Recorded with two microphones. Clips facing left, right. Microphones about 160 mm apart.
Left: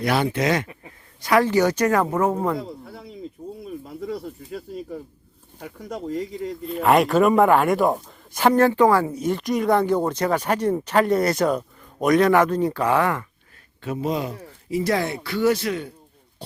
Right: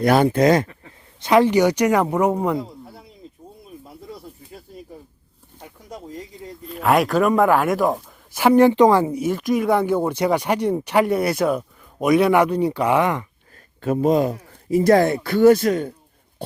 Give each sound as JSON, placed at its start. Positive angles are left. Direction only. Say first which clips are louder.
{"t": 0.0, "sound": "speech", "louder": "right 6 dB", "side_deg": -45}
{"t": 1.2, "sound": "speech", "louder": "right 3 dB", "side_deg": -20}
{"t": 2.6, "sound": "a sound", "louder": "right 2 dB", "side_deg": 90}
{"t": 4.0, "sound": "snake", "louder": "left 11 dB", "side_deg": 80}
{"t": 5.6, "sound": "speech", "louder": "left 6 dB", "side_deg": 80}
{"t": 6.7, "sound": "speech", "louder": "even", "side_deg": 0}
{"t": 8.4, "sound": "a woman's voice", "louder": "right 3 dB", "side_deg": -10}
{"t": 9.1, "sound": "speech", "louder": "right 2 dB", "side_deg": -5}
{"t": 13.8, "sound": "speech", "louder": "right 7 dB", "side_deg": -45}